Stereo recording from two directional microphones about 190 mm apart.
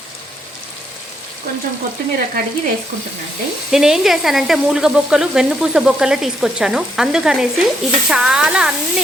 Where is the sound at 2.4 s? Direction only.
50° right (ahead or behind).